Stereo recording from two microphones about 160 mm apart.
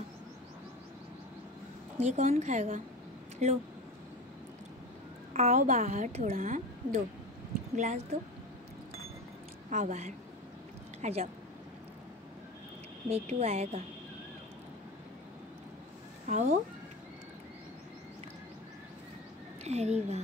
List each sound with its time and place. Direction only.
2.0 s a woman's voice: 45° right (ahead or behind)
5.3 s a woman's voice: 45° right (ahead or behind)
9.7 s a woman's voice: 45° right (ahead or behind)
13.1 s a woman's voice: 40° right (ahead or behind)
16.3 s a woman's voice: 45° right (ahead or behind)
19.6 s speech: 45° right (ahead or behind)